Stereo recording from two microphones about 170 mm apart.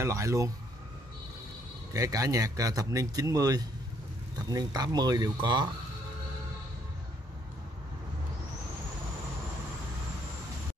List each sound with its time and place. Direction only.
0.0 s speech: 15° right (ahead or behind)
2.0 s speech: 20° right (ahead or behind)